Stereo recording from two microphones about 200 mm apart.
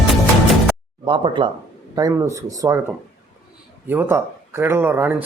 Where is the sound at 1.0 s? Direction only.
25° right (ahead or behind).